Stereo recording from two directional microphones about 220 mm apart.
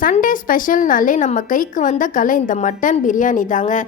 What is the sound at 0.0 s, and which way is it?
A woman's voice, 40° left (ahead or behind).